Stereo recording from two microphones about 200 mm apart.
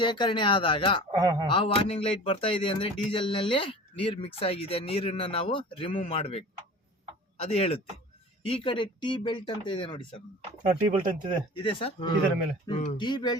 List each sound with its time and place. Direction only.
0.0 s speech: 25° left (ahead or behind)
1.1 s speech: 20° right (ahead or behind)
1.5 s speech: 25° left (ahead or behind)
10.7 s speech: 40° right (ahead or behind)
11.6 s speech: 25° left (ahead or behind)